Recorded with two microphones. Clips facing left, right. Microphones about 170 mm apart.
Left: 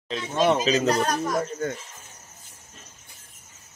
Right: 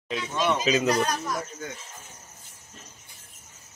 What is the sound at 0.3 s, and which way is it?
A man's voice, 50° left (ahead or behind).